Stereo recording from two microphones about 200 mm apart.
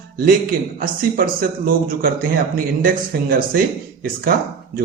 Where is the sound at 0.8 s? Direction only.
45° right (ahead or behind).